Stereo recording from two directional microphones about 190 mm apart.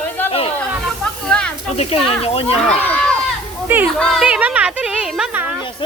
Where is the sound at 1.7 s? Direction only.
30° left (ahead or behind).